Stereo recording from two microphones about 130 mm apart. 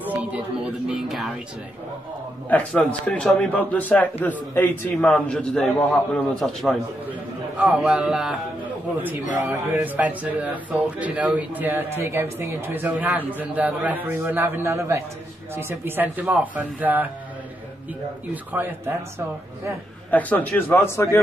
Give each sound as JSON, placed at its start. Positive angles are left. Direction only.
{"t": 0.0, "sound": "a sound", "side_deg": -10}
{"t": 0.8, "sound": "a man's voice", "side_deg": 0}
{"t": 2.5, "sound": "a man's voice", "side_deg": 10}
{"t": 18.3, "sound": "speech", "side_deg": -15}
{"t": 20.1, "sound": "a man's voice", "side_deg": 10}